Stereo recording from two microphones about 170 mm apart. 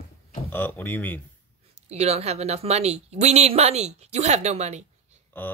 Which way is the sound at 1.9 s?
40° right (ahead or behind).